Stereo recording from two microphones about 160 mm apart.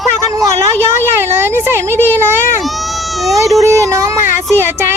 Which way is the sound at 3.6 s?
20° right (ahead or behind).